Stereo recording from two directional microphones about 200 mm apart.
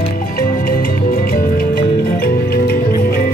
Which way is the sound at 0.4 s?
45° left (ahead or behind).